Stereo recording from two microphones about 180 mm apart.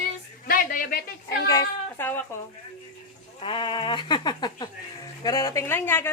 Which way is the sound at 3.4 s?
30° left (ahead or behind).